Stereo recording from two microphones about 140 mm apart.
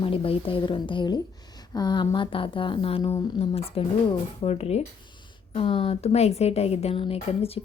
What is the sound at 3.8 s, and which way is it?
A woman's voice, 45° left (ahead or behind).